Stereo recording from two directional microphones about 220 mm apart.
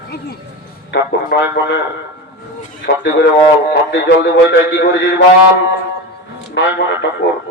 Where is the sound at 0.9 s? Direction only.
50° left (ahead or behind).